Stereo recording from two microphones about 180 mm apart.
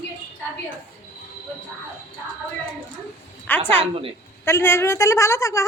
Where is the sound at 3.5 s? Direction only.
10° left (ahead or behind).